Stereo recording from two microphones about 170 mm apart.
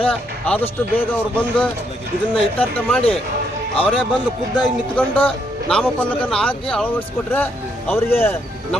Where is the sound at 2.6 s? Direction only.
10° left (ahead or behind).